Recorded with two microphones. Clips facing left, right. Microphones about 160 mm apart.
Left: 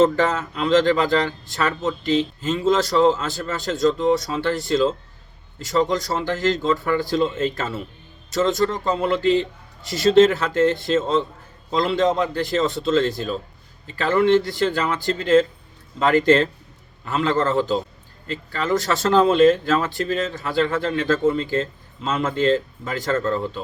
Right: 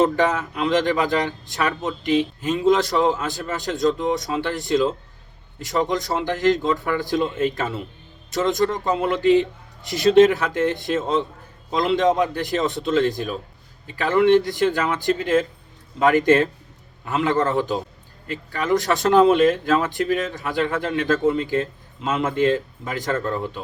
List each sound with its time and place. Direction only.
0.0 s speech: 15° right (ahead or behind)